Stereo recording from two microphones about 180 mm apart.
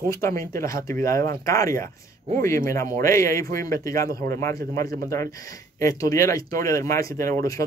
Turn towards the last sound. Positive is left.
turn(degrees=15)  # may be behind; listen again after turning